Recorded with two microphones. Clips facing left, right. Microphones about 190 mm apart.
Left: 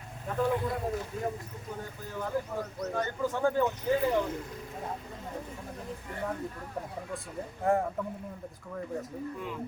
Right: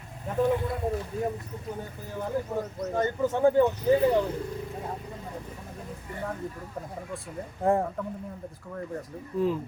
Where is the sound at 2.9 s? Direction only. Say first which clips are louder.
Right 6 dB; 20° right (ahead or behind).